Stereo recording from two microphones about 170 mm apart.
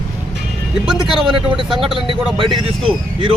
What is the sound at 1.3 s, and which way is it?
Speech, 30° right (ahead or behind).